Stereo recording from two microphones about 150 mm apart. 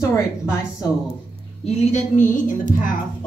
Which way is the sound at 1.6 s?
55° left (ahead or behind).